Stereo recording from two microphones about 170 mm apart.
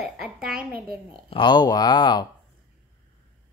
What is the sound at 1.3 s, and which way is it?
Speech, 25° left (ahead or behind).